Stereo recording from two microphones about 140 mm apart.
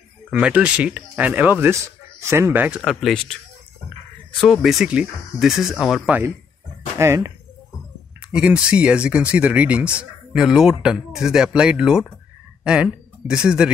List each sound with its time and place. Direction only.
0.3 s speech: 10° right (ahead or behind)
2.8 s speech: centre (ahead or behind)
4.4 s speech: centre (ahead or behind)
7.0 s speech: 20° right (ahead or behind)
8.3 s speech: 10° right (ahead or behind)